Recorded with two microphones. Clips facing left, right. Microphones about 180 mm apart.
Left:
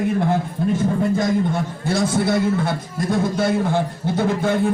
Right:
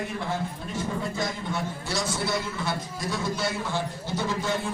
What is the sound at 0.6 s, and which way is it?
A man's voice, 55° left (ahead or behind).